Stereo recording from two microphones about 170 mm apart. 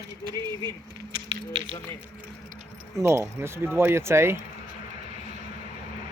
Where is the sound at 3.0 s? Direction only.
15° right (ahead or behind).